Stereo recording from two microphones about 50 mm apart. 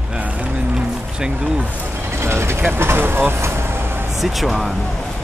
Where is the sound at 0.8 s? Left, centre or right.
Centre.